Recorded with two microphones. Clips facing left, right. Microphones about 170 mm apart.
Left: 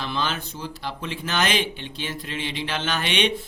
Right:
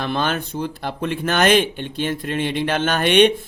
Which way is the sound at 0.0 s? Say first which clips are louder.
Right 6 dB; 55° right (ahead or behind).